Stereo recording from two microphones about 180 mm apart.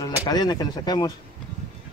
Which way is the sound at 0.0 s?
20° left (ahead or behind).